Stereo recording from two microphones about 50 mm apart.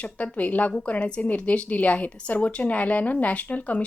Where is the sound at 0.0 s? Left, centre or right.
Left.